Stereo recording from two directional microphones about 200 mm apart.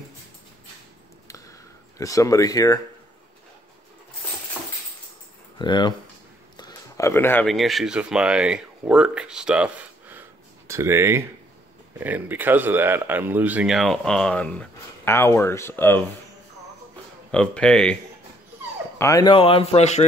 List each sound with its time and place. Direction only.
2.0 s speech: 15° left (ahead or behind)
5.6 s speech: 20° left (ahead or behind)
17.3 s speech: 5° left (ahead or behind)
18.9 s speech: 15° left (ahead or behind); by 20.1 s 35° left (ahead or behind)